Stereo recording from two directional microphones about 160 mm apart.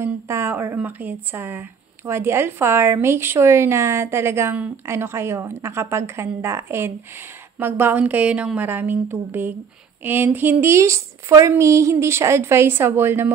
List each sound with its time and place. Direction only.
0.0 s speech: 15° right (ahead or behind)